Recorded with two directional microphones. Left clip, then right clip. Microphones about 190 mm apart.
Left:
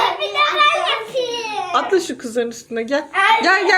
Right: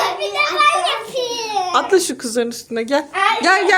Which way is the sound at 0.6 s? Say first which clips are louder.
Right 3 dB; 45° right (ahead or behind).